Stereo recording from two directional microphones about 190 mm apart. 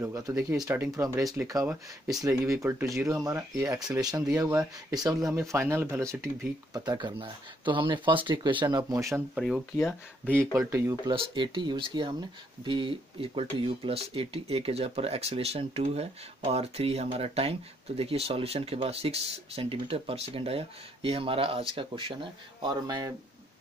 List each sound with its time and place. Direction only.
0.0 s speech: 15° right (ahead or behind)
9.8 s speech: 5° left (ahead or behind)
10.7 s speech: 15° right (ahead or behind)